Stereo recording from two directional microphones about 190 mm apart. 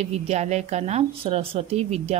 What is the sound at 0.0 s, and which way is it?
A woman's voice, 35° right (ahead or behind).